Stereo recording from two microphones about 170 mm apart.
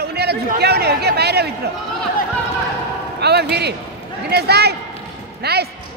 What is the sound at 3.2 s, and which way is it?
A man's voice, 75° right (ahead or behind).